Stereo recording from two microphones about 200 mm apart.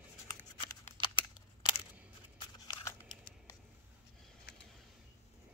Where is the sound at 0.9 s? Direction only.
25° left (ahead or behind).